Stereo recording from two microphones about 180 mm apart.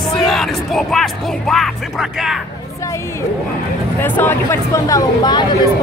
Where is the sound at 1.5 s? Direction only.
Centre (ahead or behind).